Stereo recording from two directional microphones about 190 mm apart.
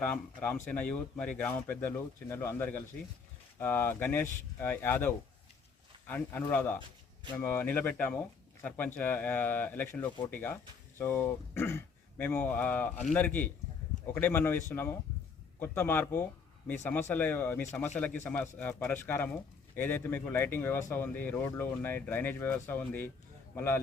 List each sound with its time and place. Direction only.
0.1 s speech: 10° left (ahead or behind)